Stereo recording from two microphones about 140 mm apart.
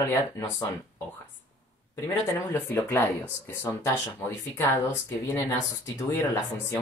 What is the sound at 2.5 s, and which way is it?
Speech, 15° left (ahead or behind).